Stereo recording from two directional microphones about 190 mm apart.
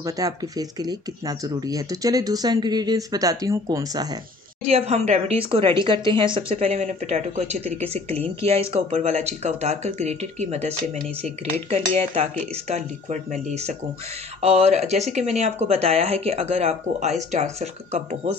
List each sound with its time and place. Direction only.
0.0 s speech: 20° right (ahead or behind)
4.6 s speech: 35° right (ahead or behind)